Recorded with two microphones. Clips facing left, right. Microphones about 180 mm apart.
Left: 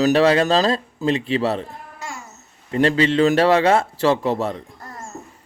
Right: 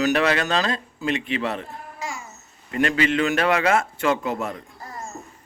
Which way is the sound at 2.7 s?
30° left (ahead or behind).